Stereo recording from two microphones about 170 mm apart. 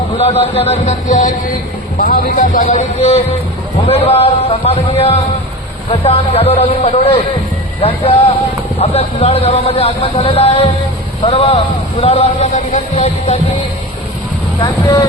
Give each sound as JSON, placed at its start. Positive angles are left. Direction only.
{"t": 0.2, "sound": "a man's voice", "side_deg": 35}
{"t": 2.0, "sound": "speech", "side_deg": 60}
{"t": 2.6, "sound": "a man's voice", "side_deg": 40}
{"t": 14.6, "sound": "speech", "side_deg": 20}